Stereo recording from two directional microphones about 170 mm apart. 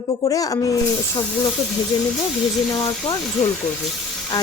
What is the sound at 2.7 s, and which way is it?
Speech, 25° left (ahead or behind).